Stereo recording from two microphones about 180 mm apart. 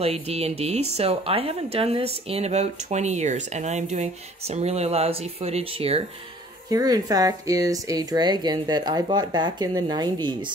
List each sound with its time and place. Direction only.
0.0 s speech: 35° right (ahead or behind)
6.7 s speech: 20° right (ahead or behind)